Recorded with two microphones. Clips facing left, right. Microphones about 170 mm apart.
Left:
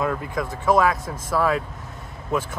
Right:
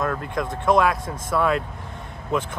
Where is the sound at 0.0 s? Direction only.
5° left (ahead or behind).